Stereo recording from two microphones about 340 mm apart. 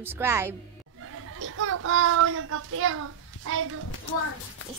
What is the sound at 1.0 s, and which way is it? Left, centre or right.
A child's voice, right.